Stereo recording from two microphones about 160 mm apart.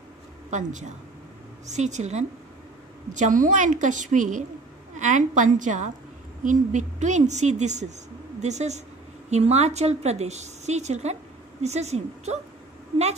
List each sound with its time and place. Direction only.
0.5 s a woman's voice: 50° right (ahead or behind)